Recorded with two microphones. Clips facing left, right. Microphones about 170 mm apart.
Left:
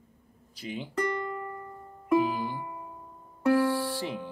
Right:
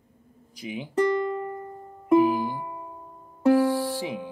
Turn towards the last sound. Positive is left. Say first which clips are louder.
# right 3 dB
turn(degrees=-15)  # may be behind; listen again after turning